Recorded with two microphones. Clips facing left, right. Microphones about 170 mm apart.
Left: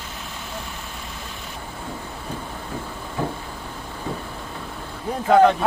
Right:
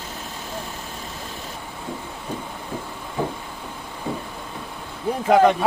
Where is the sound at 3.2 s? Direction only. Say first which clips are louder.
Right 1 dB; 15° right (ahead or behind).